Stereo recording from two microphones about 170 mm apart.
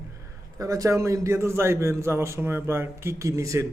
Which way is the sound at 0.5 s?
20° right (ahead or behind).